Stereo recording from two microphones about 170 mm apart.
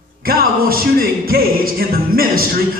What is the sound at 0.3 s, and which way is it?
Music, 60° right (ahead or behind).